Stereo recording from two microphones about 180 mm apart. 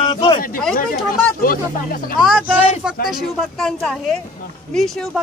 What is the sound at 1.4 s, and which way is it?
Speech, 50° left (ahead or behind).